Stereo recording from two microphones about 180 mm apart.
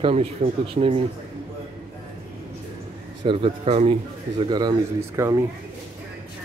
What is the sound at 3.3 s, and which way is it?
Speech, 30° right (ahead or behind).